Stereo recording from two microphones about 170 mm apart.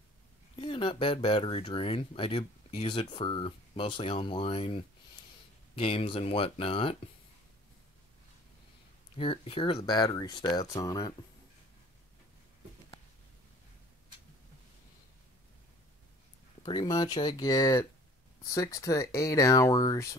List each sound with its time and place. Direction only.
0.6 s speech: 30° left (ahead or behind)
9.1 s speech: 35° left (ahead or behind)
16.6 s speech: 25° left (ahead or behind)